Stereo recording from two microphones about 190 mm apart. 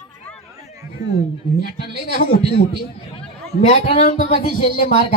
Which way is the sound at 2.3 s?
30° left (ahead or behind).